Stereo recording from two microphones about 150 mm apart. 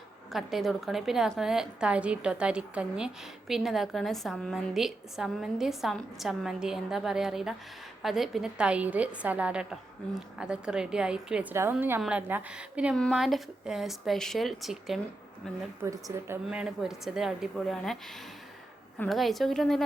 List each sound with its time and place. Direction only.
0.3 s a woman's voice: centre (ahead or behind)
15.8 s a woman's voice: 20° right (ahead or behind)
16.5 s a woman's voice: 5° right (ahead or behind)
19.0 s a woman's voice: centre (ahead or behind)